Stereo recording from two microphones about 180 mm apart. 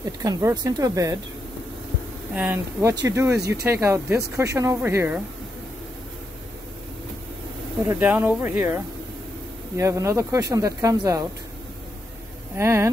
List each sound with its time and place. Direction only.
0.0 s speech: 20° right (ahead or behind)
2.3 s speech: 10° right (ahead or behind)
3.3 s speech: 65° right (ahead or behind)
3.6 s speech: 15° right (ahead or behind)
7.9 s speech: 10° right (ahead or behind)
12.5 s speech: 15° right (ahead or behind)